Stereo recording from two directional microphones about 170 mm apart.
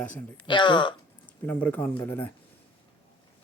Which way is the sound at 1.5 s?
10° left (ahead or behind).